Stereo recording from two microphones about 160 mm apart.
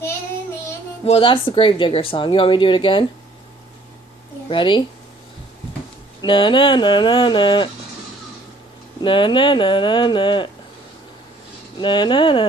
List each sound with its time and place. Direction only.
1.0 s speech: 35° left (ahead or behind)
4.5 s speech: 30° left (ahead or behind)
6.2 s speech: 30° left (ahead or behind)
9.0 s speech: 30° left (ahead or behind)
11.8 s speech: 30° left (ahead or behind)